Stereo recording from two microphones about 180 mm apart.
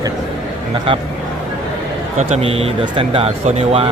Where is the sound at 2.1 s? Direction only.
35° right (ahead or behind).